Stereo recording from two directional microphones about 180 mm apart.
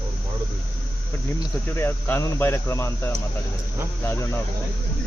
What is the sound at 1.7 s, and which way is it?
Speech, 10° left (ahead or behind).